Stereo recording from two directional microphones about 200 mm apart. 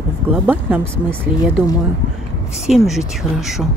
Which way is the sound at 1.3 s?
25° left (ahead or behind).